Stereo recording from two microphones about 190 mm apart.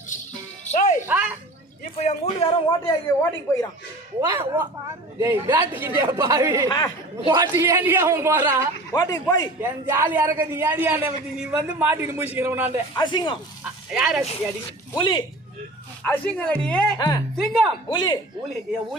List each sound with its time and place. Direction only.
0.6 s music: 40° left (ahead or behind)
1.0 s a sound: 10° right (ahead or behind)
2.0 s a man's voice: 35° left (ahead or behind)
2.5 s a man's voice: 25° left (ahead or behind)
4.2 s a man's voice: 20° right (ahead or behind)
8.9 s a man's voice: 20° left (ahead or behind)
9.6 s a man's voice: 10° right (ahead or behind)
13.0 s a man's voice: 25° left (ahead or behind)
13.9 s speech: centre (ahead or behind)
14.9 s a man's voice: 25° left (ahead or behind)
16.0 s a man's voice: 10° left (ahead or behind)
17.0 s a man's voice: 20° left (ahead or behind)
17.3 s speech: centre (ahead or behind)
17.8 s a man's voice: 20° left (ahead or behind)